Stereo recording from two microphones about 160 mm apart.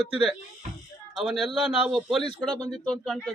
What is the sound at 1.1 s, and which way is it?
Speech, centre (ahead or behind).